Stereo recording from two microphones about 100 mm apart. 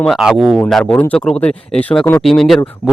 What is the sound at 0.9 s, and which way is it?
Speech, 15° left (ahead or behind).